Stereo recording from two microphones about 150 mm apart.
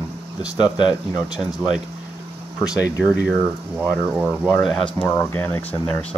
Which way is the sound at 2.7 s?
10° right (ahead or behind).